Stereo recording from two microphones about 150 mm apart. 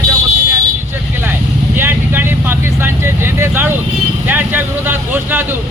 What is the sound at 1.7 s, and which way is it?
Speech, 15° right (ahead or behind).